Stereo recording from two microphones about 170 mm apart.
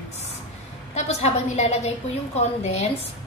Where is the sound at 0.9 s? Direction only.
40° left (ahead or behind).